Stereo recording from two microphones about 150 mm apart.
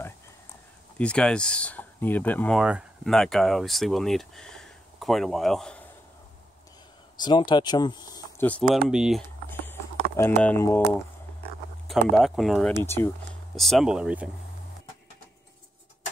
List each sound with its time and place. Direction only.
0.9 s speech: 5° left (ahead or behind)
2.6 s speech: centre (ahead or behind)
7.2 s speech: 30° left (ahead or behind)
8.4 s speech: 10° left (ahead or behind)
8.8 s speech: centre (ahead or behind)
9.5 s clip-clop: 15° left (ahead or behind)
11.9 s speech: centre (ahead or behind)
12.7 s speech: 15° left (ahead or behind)
13.6 s speech: centre (ahead or behind)